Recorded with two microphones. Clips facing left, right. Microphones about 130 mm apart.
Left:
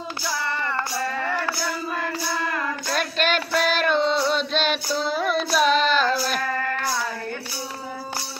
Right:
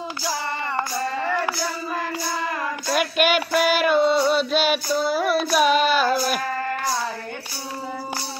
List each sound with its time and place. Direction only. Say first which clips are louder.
0.5 s music: right 1 dB; 20° right (ahead or behind)
2.9 s music: right 4 dB; 10° right (ahead or behind)
4.8 s child singing: right 3 dB; 5° right (ahead or behind)